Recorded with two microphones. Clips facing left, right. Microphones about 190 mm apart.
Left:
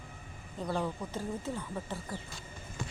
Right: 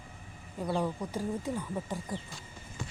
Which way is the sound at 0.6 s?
10° right (ahead or behind).